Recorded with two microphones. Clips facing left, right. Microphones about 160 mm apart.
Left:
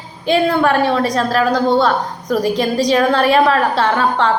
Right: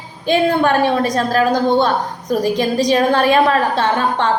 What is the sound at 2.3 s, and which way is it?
A woman's voice, 20° right (ahead or behind).